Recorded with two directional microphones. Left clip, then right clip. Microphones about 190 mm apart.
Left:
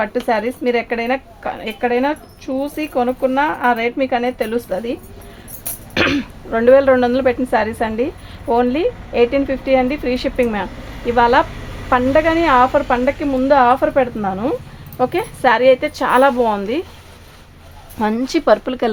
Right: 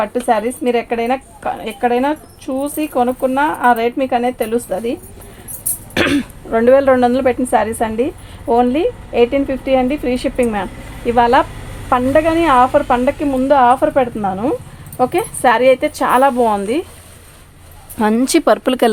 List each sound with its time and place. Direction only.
0.0 s speech: 20° right (ahead or behind)
18.0 s speech: 40° right (ahead or behind); by 18.9 s 60° right (ahead or behind)